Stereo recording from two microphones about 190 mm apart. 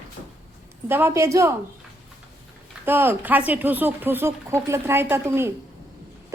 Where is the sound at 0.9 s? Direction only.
10° right (ahead or behind).